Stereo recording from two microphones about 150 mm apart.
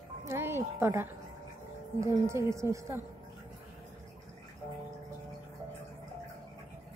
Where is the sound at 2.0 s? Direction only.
20° right (ahead or behind).